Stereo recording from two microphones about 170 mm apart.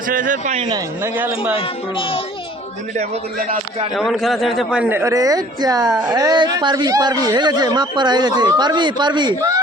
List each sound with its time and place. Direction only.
0.1 s speech: 50° right (ahead or behind)
0.7 s speech: 10° right (ahead or behind)
1.5 s speech: 30° left (ahead or behind)
3.9 s speech: centre (ahead or behind); by 9.6 s 20° right (ahead or behind)